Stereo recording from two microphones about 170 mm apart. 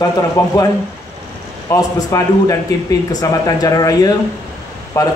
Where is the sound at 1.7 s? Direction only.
20° left (ahead or behind).